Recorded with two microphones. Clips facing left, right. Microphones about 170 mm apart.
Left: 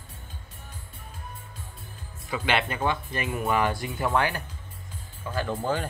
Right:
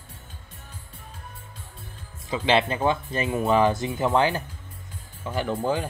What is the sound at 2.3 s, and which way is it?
Speech, 25° right (ahead or behind).